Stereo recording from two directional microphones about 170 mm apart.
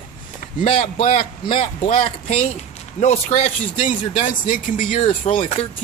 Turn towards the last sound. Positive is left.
turn(degrees=40)  # may be behind; listen again after turning